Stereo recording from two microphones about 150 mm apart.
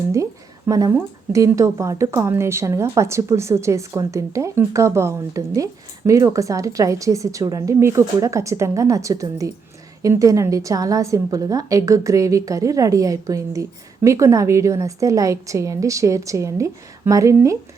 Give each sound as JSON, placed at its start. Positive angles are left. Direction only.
{"t": 0.7, "sound": "a woman's voice", "side_deg": -20}